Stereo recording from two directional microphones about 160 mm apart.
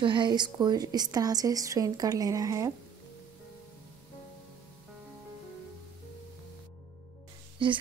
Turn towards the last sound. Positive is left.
turn(degrees=-30)  # may be behind; listen again after turning